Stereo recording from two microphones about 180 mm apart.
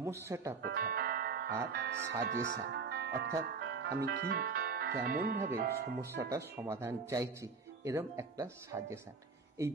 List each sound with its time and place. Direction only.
0.0 s speech: 15° right (ahead or behind)
0.7 s music: 55° right (ahead or behind)
1.8 s speech: 70° right (ahead or behind)
6.3 s speech: 15° right (ahead or behind)